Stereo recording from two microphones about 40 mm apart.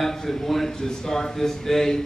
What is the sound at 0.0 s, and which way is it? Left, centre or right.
A man's voice, centre.